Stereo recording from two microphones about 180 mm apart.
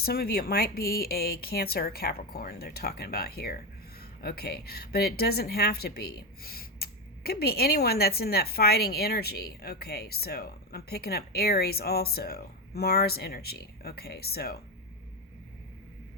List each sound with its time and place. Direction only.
0.0 s a woman's voice: 60° left (ahead or behind)